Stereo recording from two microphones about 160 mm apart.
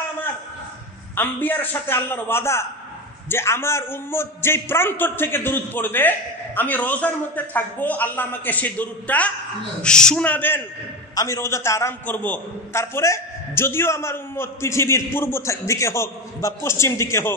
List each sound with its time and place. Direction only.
1.1 s a man's voice: 10° left (ahead or behind)